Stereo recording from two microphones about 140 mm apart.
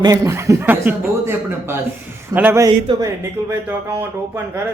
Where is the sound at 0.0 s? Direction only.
20° right (ahead or behind).